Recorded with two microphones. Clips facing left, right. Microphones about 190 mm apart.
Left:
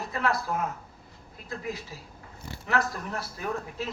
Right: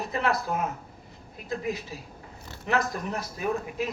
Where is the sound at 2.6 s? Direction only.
20° right (ahead or behind).